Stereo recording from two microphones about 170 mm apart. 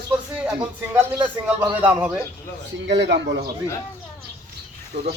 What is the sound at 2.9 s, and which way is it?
Speech, 90° right.